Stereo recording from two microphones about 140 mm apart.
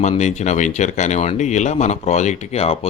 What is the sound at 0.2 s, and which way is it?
Speech, 55° left (ahead or behind).